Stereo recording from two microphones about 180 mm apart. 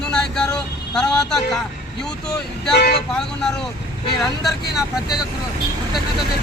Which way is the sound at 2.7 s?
60° left (ahead or behind).